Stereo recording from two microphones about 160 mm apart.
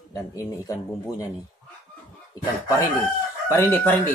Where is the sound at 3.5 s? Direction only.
10° left (ahead or behind).